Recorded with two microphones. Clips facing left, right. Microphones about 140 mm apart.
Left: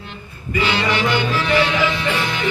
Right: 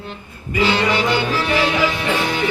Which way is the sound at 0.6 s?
40° right (ahead or behind).